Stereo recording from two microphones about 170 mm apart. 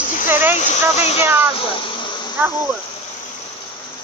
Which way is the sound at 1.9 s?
30° left (ahead or behind).